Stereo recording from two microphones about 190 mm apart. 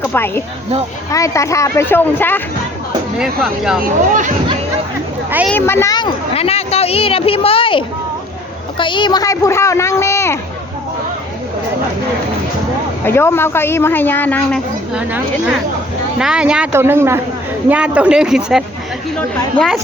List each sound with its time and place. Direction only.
0.0 s speech: 10° left (ahead or behind)
3.2 s speech: centre (ahead or behind)
3.8 s speech: 45° right (ahead or behind)
5.5 s a woman's voice: 10° left (ahead or behind)
13.1 s speech: 10° left (ahead or behind)
16.1 s speech: 5° right (ahead or behind)